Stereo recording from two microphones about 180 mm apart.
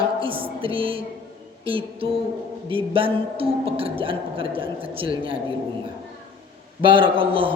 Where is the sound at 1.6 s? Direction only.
30° right (ahead or behind).